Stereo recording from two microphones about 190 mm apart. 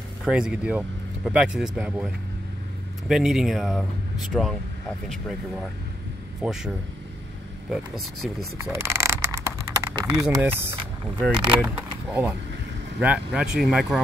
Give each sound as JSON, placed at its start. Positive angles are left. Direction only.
{"t": 0.2, "sound": "speech", "side_deg": -5}
{"t": 6.4, "sound": "speech", "side_deg": -5}
{"t": 7.7, "sound": "speech", "side_deg": 0}
{"t": 8.7, "sound": "a sound", "side_deg": -15}
{"t": 9.9, "sound": "speech", "side_deg": -15}
{"t": 11.3, "sound": "speech", "side_deg": -25}
{"t": 11.6, "sound": "speech", "side_deg": -10}